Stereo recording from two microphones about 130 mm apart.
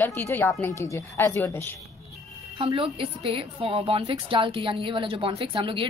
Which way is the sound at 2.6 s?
45° right (ahead or behind).